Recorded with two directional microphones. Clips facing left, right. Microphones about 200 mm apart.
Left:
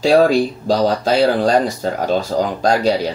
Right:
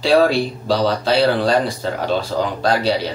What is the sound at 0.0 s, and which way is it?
Speech, 45° left (ahead or behind).